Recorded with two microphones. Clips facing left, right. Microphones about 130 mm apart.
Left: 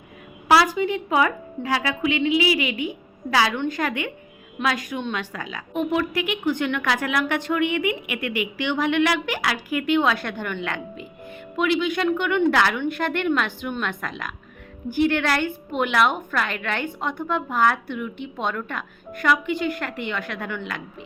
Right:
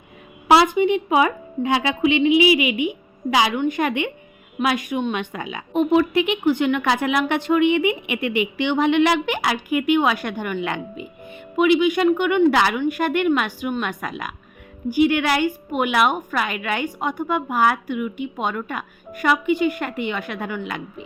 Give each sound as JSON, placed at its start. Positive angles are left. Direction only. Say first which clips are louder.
{"t": 0.4, "sound": "a woman's voice", "louder": "right 3 dB", "side_deg": -20}